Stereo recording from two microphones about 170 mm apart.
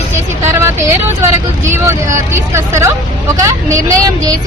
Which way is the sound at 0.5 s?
15° right (ahead or behind).